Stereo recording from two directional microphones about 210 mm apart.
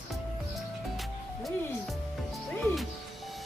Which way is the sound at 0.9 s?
Centre (ahead or behind).